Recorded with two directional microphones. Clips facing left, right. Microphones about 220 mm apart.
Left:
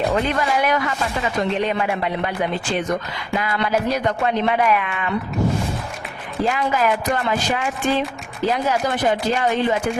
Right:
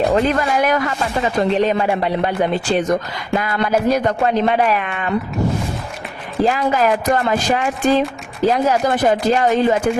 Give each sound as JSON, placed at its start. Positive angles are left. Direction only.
{"t": 0.1, "sound": "speech", "side_deg": -45}
{"t": 6.4, "sound": "speech", "side_deg": -40}